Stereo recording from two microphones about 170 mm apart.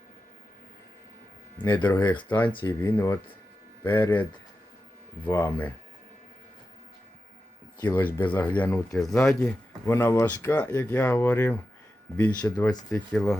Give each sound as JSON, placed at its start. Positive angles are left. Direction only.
{"t": 1.5, "sound": "speech", "side_deg": 25}
{"t": 2.9, "sound": "speech", "side_deg": 15}
{"t": 5.3, "sound": "speech", "side_deg": 15}
{"t": 7.8, "sound": "speech", "side_deg": 10}
{"t": 9.2, "sound": "speech", "side_deg": 15}
{"t": 13.1, "sound": "speech", "side_deg": 0}